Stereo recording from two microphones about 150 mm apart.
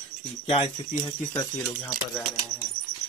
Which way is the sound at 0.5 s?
35° left (ahead or behind).